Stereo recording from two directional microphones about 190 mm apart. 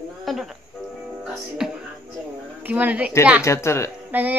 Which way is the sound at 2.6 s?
10° right (ahead or behind).